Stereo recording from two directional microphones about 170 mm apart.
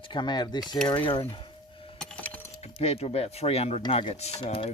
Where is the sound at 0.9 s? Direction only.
25° left (ahead or behind).